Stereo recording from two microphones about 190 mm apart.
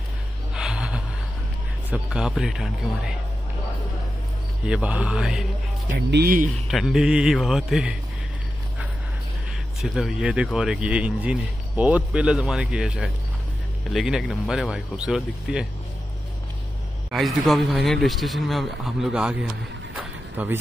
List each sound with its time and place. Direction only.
0.6 s gasp: 5° right (ahead or behind)
1.9 s speech: 5° right (ahead or behind)
4.6 s speech: 5° right (ahead or behind)
5.9 s speech: 60° right (ahead or behind)
6.7 s speech: centre (ahead or behind)
9.8 s speech: centre (ahead or behind)
17.1 s speech: centre (ahead or behind)
20.0 s a sound: 10° right (ahead or behind)